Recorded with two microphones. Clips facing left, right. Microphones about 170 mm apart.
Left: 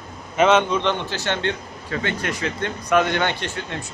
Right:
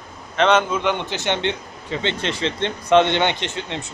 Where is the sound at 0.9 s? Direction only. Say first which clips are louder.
Right 2 dB; 20° right (ahead or behind).